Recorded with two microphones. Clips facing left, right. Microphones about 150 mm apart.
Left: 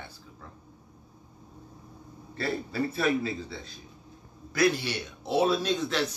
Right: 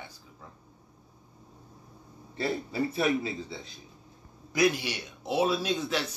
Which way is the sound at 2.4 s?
20° right (ahead or behind).